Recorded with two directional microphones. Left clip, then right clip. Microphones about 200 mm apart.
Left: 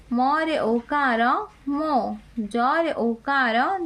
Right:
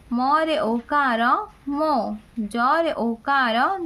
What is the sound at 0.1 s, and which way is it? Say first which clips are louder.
A woman's voice: right 2 dB; 10° right (ahead or behind).